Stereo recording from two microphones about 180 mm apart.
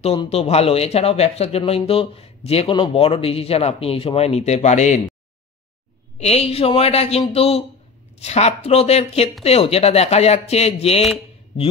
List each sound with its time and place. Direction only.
0.0 s speech: 35° left (ahead or behind)
6.1 s speech: 35° left (ahead or behind)